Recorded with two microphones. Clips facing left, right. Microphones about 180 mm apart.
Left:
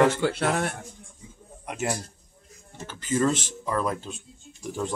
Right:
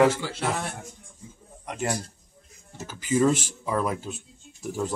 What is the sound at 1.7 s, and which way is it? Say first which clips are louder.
Speech: even; 5° left (ahead or behind).